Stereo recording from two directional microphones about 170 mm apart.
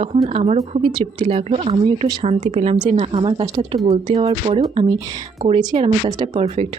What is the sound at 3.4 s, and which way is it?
Speech, 20° right (ahead or behind).